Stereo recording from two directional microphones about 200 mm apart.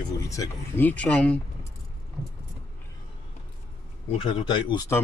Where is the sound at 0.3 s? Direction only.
15° left (ahead or behind).